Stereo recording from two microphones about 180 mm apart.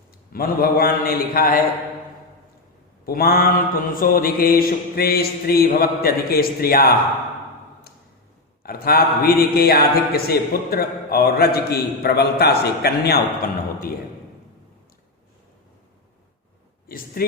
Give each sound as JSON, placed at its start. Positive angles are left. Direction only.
{"t": 0.3, "sound": "a man's voice", "side_deg": 55}
{"t": 3.1, "sound": "a man's voice", "side_deg": 55}
{"t": 8.6, "sound": "a man's voice", "side_deg": 55}
{"t": 16.9, "sound": "speech", "side_deg": 55}